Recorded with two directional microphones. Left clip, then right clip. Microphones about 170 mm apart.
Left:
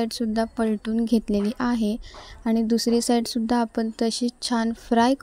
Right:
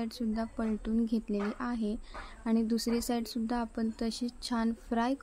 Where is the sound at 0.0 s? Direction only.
40° left (ahead or behind).